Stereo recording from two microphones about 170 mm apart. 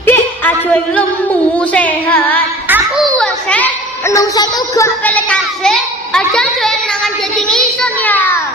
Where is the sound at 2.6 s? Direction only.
10° right (ahead or behind).